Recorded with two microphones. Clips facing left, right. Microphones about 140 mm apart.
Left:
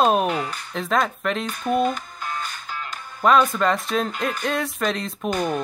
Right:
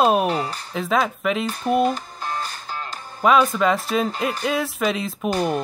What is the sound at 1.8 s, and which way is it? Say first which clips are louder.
Music: right 2 dB; 35° right (ahead or behind).